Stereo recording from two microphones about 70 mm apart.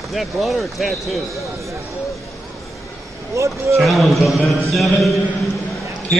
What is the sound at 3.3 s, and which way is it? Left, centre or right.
Speech, right.